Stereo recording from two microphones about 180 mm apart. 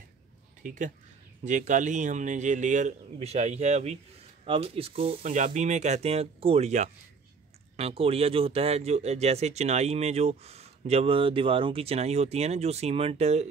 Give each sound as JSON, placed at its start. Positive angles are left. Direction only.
{"t": 0.6, "sound": "speech", "side_deg": -45}